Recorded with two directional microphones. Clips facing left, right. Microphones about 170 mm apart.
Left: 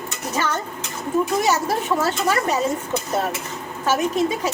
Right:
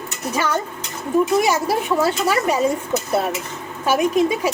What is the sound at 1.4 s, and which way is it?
Speech, 10° right (ahead or behind).